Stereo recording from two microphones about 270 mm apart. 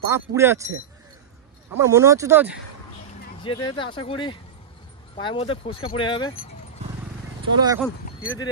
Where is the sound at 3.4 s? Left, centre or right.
Centre.